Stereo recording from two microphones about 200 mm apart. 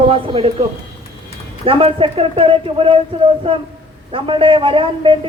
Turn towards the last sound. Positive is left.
turn(degrees=-25)  # may be behind; listen again after turning